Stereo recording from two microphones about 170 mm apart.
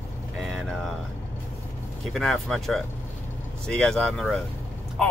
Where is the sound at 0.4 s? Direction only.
Centre (ahead or behind).